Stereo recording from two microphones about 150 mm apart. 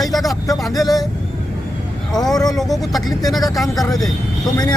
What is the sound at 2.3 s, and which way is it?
Speech, 25° left (ahead or behind).